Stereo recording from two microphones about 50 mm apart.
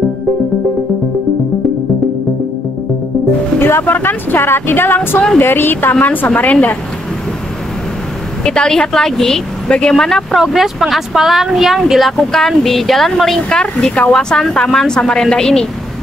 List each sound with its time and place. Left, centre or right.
3.5 s a woman's voice: left
8.5 s a woman's voice: centre
10.3 s a woman's voice: centre